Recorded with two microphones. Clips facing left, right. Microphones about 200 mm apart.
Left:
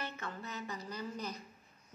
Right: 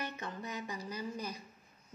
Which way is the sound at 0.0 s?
15° right (ahead or behind).